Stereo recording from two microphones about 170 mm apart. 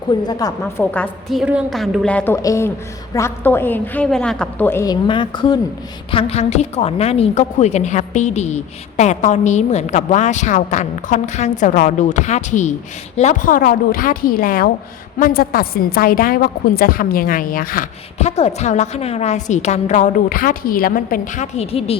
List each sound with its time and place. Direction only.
0.1 s a woman's voice: 25° left (ahead or behind)
5.0 s a woman's voice: 30° left (ahead or behind); by 17.8 s 60° left (ahead or behind)
18.2 s a woman's voice: 40° left (ahead or behind)